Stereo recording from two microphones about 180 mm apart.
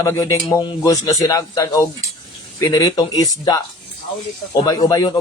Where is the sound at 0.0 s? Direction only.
15° left (ahead or behind).